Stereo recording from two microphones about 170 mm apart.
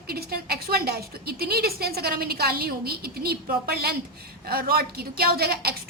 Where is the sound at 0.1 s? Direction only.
65° right (ahead or behind).